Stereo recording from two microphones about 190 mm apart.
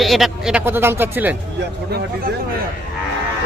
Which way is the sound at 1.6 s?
55° right (ahead or behind).